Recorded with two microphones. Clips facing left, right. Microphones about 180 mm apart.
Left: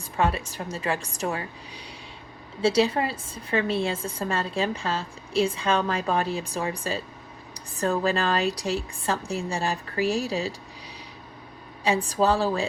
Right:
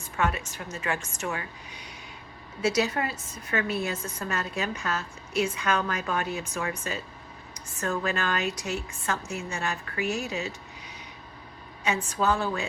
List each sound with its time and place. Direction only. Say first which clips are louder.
0.2 s a woman's voice: left 3 dB; 35° left (ahead or behind)
11.8 s a woman's voice: left 5 dB; 35° left (ahead or behind)